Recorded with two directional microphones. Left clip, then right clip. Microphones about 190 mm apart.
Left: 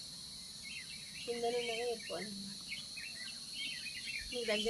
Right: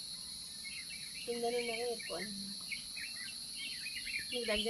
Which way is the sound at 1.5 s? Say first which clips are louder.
Even; centre (ahead or behind).